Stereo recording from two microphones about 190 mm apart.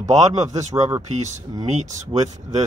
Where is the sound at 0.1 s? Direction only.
35° right (ahead or behind).